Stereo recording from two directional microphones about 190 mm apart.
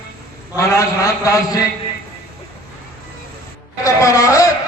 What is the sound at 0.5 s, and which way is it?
Speech, 15° left (ahead or behind).